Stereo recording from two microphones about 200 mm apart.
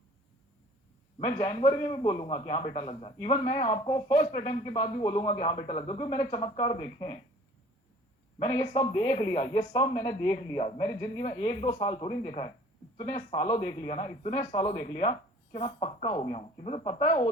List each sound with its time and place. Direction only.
1.2 s a man's voice: 25° left (ahead or behind)
8.4 s a man's voice: 20° left (ahead or behind)